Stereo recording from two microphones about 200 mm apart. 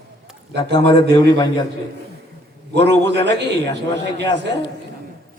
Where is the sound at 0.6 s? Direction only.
20° left (ahead or behind).